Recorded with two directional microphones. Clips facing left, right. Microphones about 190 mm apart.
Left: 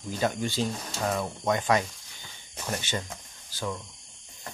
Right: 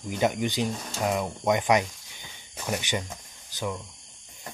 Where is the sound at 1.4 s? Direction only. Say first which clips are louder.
Right 2 dB; 15° right (ahead or behind).